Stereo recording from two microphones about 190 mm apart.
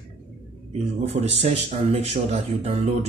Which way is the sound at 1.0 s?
35° right (ahead or behind).